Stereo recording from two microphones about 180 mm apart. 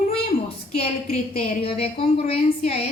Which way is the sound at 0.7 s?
35° left (ahead or behind).